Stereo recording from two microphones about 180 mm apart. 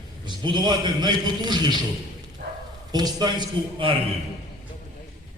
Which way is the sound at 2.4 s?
65° right (ahead or behind).